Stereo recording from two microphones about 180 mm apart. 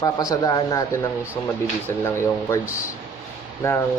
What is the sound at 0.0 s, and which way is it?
Speech, 20° left (ahead or behind).